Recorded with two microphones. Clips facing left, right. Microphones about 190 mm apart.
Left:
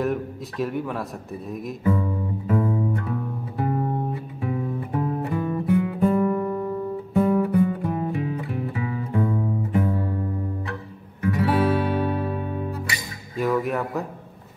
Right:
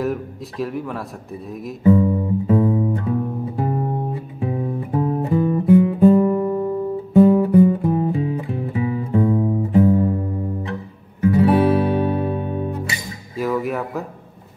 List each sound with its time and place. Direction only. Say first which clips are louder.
0.0 s a man's voice: right 1 dB; centre (ahead or behind)
1.8 s music: right 10 dB; 25° right (ahead or behind)
13.4 s music: right 1 dB; centre (ahead or behind)